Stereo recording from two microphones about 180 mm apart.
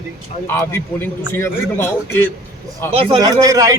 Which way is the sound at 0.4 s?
15° left (ahead or behind).